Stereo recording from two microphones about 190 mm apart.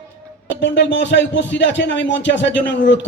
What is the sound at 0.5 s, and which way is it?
Speech, 70° left (ahead or behind).